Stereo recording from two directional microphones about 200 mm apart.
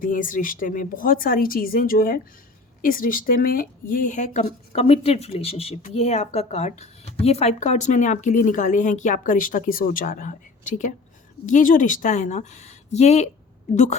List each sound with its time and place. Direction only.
0.0 s speech: 40° left (ahead or behind)